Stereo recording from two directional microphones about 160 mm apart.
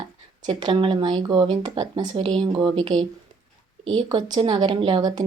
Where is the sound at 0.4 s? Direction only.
30° right (ahead or behind).